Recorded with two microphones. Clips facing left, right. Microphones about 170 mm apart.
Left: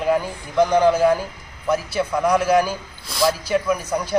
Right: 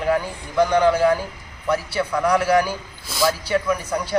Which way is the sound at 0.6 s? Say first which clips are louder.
Left 1 dB; centre (ahead or behind).